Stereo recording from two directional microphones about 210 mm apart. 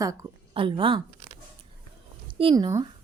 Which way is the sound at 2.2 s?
25° right (ahead or behind).